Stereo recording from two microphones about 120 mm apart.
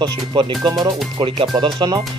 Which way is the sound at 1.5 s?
35° right (ahead or behind).